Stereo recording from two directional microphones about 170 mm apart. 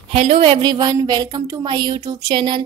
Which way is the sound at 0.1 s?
35° right (ahead or behind).